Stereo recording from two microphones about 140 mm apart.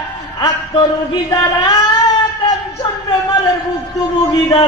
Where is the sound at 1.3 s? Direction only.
30° left (ahead or behind).